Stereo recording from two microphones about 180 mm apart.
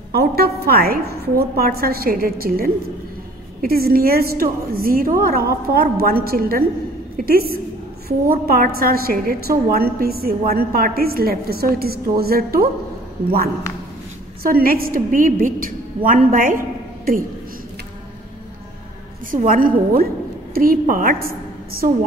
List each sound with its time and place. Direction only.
0.1 s a woman's voice: 60° right (ahead or behind)
14.4 s a woman's voice: 55° right (ahead or behind)
19.3 s a woman's voice: 50° right (ahead or behind)